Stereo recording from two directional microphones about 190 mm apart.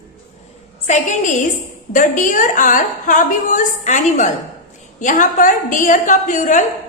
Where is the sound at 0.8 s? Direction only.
40° left (ahead or behind).